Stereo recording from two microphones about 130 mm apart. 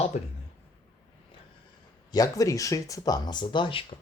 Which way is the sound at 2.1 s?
25° left (ahead or behind).